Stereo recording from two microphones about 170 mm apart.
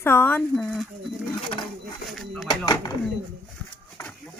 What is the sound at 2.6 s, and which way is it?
Speech, 25° left (ahead or behind).